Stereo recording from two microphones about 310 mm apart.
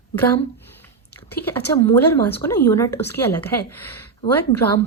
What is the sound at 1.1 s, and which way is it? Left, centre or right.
A woman's voice, centre.